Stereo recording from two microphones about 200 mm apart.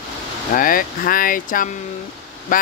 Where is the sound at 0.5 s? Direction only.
45° left (ahead or behind).